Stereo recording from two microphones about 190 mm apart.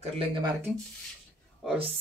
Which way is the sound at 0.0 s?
30° right (ahead or behind).